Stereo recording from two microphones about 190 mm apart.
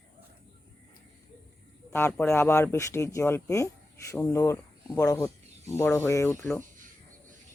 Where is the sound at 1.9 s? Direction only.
10° left (ahead or behind).